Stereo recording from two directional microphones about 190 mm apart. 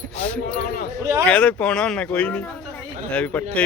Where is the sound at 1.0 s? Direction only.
15° right (ahead or behind).